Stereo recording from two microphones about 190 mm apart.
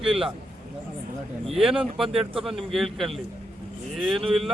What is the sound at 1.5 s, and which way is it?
Speech, centre (ahead or behind).